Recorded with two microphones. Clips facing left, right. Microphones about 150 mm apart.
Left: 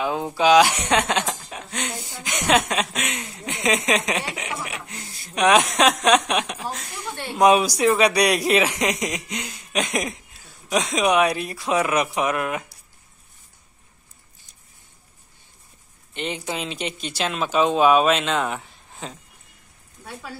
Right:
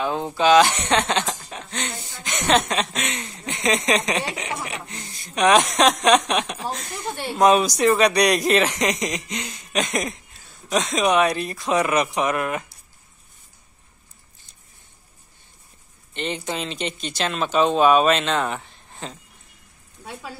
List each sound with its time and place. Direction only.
0.0 s speech: 10° left (ahead or behind)
16.1 s speech: 10° left (ahead or behind)